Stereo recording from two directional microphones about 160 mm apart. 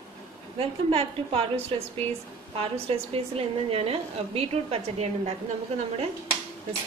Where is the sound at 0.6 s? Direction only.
35° right (ahead or behind).